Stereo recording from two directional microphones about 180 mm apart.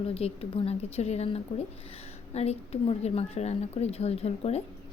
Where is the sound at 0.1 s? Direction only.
35° left (ahead or behind).